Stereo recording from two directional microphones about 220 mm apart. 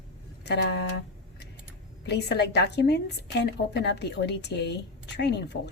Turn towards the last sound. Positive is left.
turn(degrees=50)  # may be behind; listen again after turning